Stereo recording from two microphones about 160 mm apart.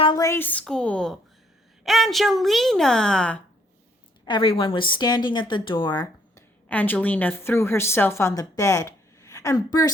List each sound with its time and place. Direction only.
0.0 s a woman's voice: 25° left (ahead or behind); by 3.3 s 5° left (ahead or behind)
4.3 s a woman's voice: 35° left (ahead or behind)
6.7 s a woman's voice: 10° left (ahead or behind)